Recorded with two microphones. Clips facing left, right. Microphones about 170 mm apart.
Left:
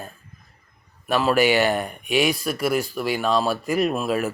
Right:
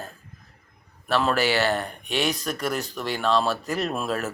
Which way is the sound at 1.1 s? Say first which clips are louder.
Left 4 dB; 10° left (ahead or behind).